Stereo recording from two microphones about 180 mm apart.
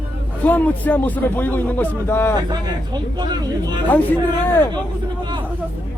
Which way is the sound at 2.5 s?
25° right (ahead or behind).